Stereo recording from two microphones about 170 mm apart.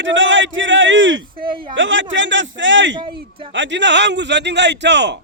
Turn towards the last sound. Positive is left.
turn(degrees=-90)